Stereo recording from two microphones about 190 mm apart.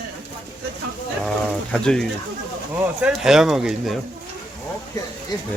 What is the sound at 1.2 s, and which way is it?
Speech, 5° left (ahead or behind).